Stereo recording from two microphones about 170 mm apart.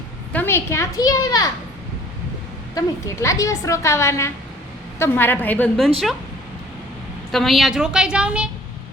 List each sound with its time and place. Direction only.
0.3 s a child's voice: 15° left (ahead or behind)
2.7 s a woman's voice: 20° left (ahead or behind)
7.3 s a woman's voice: centre (ahead or behind)